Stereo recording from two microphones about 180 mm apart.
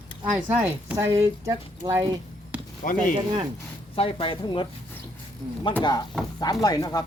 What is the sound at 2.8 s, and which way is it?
Speech, 50° left (ahead or behind).